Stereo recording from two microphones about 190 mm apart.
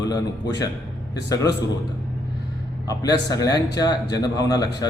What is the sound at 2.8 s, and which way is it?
A man's voice, 20° left (ahead or behind).